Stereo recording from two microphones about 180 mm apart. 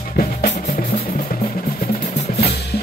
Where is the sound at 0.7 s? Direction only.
55° left (ahead or behind).